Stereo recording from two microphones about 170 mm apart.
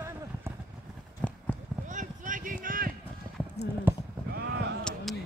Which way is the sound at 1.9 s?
50° right (ahead or behind).